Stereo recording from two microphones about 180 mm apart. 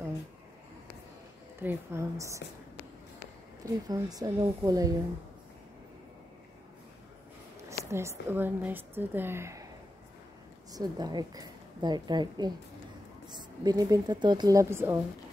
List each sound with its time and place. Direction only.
1.6 s a woman's voice: 10° right (ahead or behind)
3.6 s a woman's voice: 20° right (ahead or behind)
7.9 s a woman's voice: 15° right (ahead or behind)
10.7 s a woman's voice: 20° right (ahead or behind)